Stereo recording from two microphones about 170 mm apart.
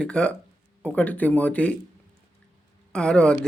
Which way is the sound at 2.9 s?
5° left (ahead or behind).